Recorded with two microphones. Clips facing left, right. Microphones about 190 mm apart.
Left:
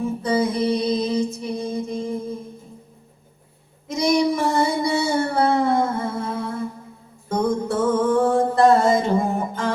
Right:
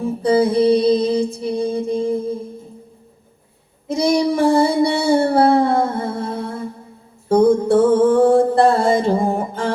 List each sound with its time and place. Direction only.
0.0 s music: 30° right (ahead or behind)
3.8 s female singing: 30° right (ahead or behind)
7.3 s music: 30° right (ahead or behind)